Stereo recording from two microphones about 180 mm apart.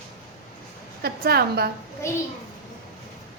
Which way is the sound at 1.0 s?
60° right (ahead or behind).